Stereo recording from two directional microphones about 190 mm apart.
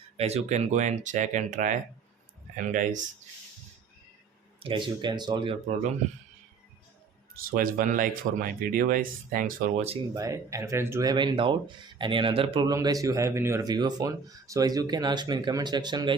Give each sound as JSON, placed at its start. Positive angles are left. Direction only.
{"t": 0.2, "sound": "speech", "side_deg": -35}
{"t": 4.6, "sound": "speech", "side_deg": -25}
{"t": 7.3, "sound": "speech", "side_deg": -50}
{"t": 10.2, "sound": "speech", "side_deg": -15}